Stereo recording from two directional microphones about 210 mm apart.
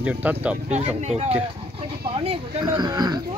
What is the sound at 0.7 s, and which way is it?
Speech, 30° right (ahead or behind).